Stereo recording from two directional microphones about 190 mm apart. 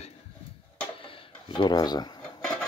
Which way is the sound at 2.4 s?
5° left (ahead or behind).